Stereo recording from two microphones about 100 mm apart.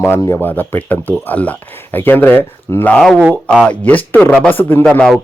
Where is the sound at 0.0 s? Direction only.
25° left (ahead or behind).